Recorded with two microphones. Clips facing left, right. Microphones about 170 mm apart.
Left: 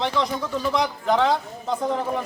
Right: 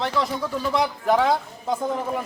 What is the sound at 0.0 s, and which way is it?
A man's voice, 5° right (ahead or behind).